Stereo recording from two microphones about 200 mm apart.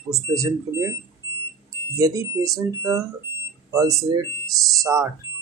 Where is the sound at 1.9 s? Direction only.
15° right (ahead or behind).